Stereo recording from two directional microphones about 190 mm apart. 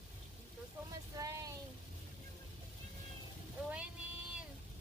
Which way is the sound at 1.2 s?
20° right (ahead or behind).